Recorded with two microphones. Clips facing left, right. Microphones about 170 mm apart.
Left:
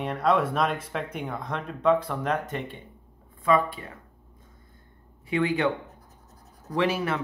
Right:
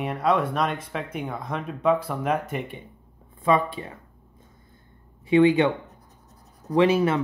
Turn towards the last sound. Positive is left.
turn(degrees=-20)  # may be behind; listen again after turning